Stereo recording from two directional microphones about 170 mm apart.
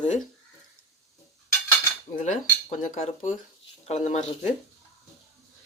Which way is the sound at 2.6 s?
40° left (ahead or behind).